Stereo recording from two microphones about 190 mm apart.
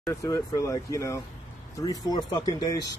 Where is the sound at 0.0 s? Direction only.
15° left (ahead or behind).